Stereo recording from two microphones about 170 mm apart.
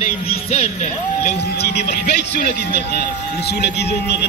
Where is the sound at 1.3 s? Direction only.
75° left (ahead or behind).